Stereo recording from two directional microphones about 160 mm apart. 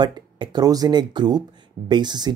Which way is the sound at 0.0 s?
30° right (ahead or behind).